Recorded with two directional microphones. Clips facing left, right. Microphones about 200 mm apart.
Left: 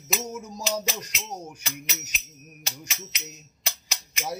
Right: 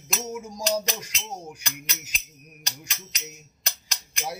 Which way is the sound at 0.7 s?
5° left (ahead or behind).